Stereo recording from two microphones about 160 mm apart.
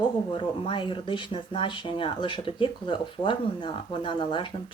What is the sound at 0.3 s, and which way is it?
Speech, 30° left (ahead or behind).